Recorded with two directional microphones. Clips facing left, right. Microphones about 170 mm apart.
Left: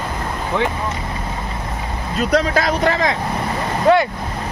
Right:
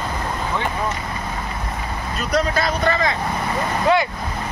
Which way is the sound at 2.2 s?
90° left.